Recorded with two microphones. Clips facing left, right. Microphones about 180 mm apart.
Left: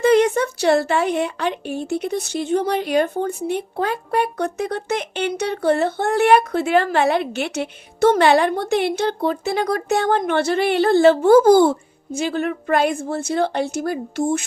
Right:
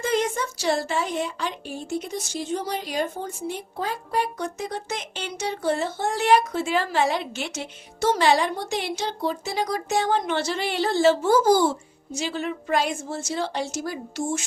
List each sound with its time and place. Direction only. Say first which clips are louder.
0.0 s a woman's voice: left 9 dB; 65° left (ahead or behind)